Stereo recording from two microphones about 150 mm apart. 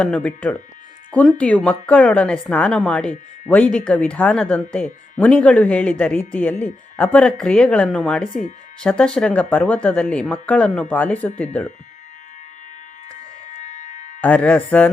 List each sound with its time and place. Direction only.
0.0 s speech: 10° left (ahead or behind)
13.5 s music: 55° left (ahead or behind)
14.2 s speech: 10° left (ahead or behind)